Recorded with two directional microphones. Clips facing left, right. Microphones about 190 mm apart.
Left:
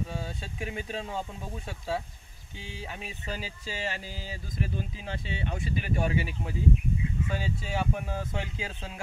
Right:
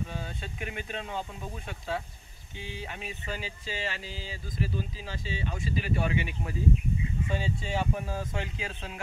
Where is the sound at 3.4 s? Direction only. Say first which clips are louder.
Even; 40° left (ahead or behind).